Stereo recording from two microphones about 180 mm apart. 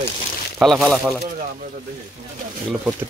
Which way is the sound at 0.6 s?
Centre (ahead or behind).